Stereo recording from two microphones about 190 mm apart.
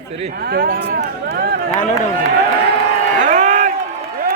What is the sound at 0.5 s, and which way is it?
Speech, 50° right (ahead or behind).